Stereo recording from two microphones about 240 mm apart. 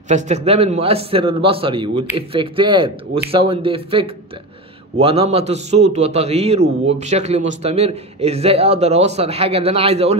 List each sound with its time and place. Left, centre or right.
0.1 s a man's voice: right